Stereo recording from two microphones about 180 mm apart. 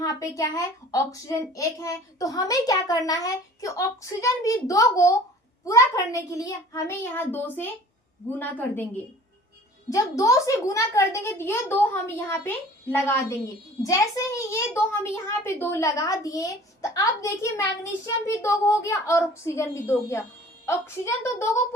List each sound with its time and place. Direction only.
0.0 s a child's voice: 20° left (ahead or behind)
9.9 s a child's voice: 20° left (ahead or behind)